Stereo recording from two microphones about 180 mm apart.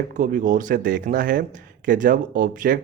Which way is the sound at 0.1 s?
50° right (ahead or behind).